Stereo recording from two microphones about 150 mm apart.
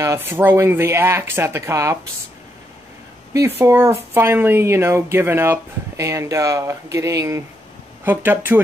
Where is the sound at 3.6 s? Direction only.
15° right (ahead or behind).